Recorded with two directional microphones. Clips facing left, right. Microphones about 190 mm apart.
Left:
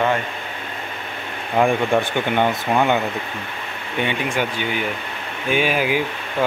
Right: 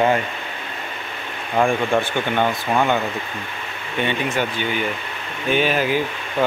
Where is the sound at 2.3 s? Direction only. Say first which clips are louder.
Left 2 dB; 15° left (ahead or behind).